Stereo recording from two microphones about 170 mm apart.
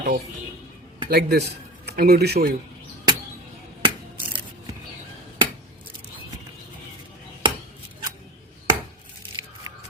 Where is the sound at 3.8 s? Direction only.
30° right (ahead or behind).